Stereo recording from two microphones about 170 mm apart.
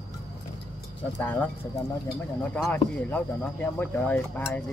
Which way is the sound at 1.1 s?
10° left (ahead or behind).